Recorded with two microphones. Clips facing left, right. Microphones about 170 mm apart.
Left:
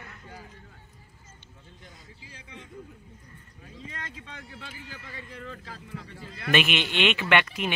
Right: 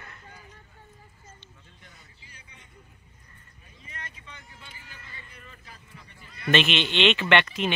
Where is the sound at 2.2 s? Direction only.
90° left.